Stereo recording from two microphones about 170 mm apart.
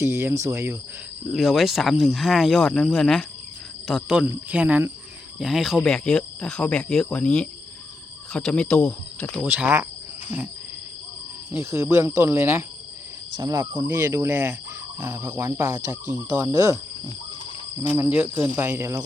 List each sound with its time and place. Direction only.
0.0 s speech: 15° right (ahead or behind)
1.3 s speech: centre (ahead or behind)
9.4 s speech: 10° right (ahead or behind)
11.5 s speech: 15° right (ahead or behind)
17.9 s speech: 10° right (ahead or behind)